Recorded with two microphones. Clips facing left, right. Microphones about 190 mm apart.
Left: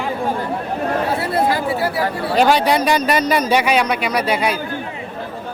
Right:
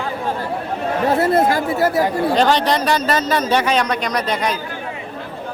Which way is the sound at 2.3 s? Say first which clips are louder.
Left 4 dB; 10° left (ahead or behind).